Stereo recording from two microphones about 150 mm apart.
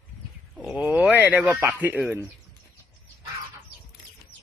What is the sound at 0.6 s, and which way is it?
Speech, 10° right (ahead or behind).